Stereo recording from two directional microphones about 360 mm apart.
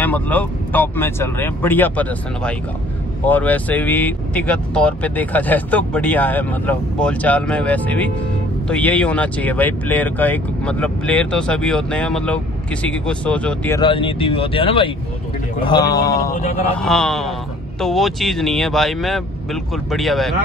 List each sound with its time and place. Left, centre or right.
0.0 s speech: centre
16.3 s speech: left
16.7 s speech: centre